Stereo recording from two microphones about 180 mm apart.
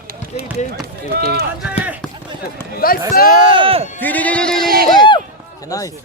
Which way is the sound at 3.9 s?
10° left (ahead or behind).